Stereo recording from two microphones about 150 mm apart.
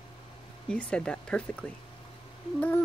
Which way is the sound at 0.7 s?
5° left (ahead or behind).